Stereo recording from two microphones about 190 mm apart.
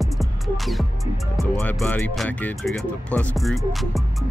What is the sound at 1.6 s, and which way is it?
Speech, 10° left (ahead or behind).